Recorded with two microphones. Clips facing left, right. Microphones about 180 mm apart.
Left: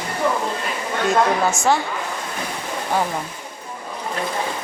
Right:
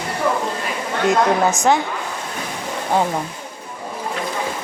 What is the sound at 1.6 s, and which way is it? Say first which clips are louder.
Speech: right 2 dB; 20° right (ahead or behind).